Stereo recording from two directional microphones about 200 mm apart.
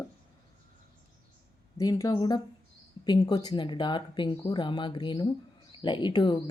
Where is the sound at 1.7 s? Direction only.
15° left (ahead or behind).